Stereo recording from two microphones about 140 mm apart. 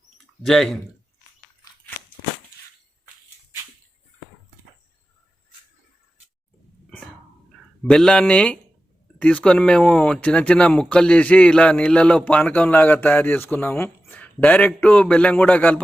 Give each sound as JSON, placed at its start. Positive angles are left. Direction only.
{"t": 0.4, "sound": "speech", "side_deg": 0}
{"t": 7.9, "sound": "speech", "side_deg": 5}